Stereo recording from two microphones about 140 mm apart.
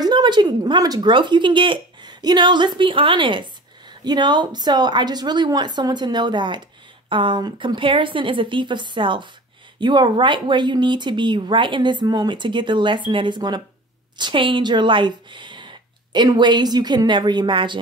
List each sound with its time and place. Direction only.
0.0 s a woman's voice: 30° right (ahead or behind)